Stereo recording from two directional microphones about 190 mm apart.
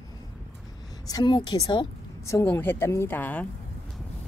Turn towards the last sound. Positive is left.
turn(degrees=10)  # may be behind; listen again after turning